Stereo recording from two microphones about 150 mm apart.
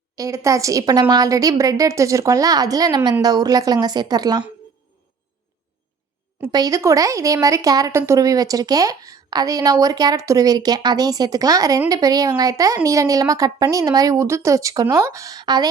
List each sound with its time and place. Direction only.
0.2 s speech: 20° right (ahead or behind)
6.5 s speech: 25° right (ahead or behind)